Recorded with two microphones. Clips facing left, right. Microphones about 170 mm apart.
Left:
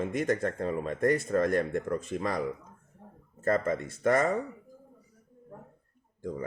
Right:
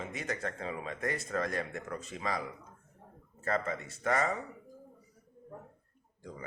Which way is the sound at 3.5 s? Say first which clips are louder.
Left 6 dB; 50° left (ahead or behind).